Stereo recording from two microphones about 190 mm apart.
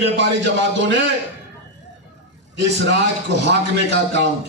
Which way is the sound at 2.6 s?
65° right (ahead or behind).